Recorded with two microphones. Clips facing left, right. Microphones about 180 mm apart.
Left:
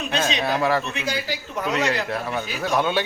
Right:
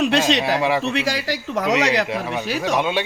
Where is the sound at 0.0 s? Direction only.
85° right.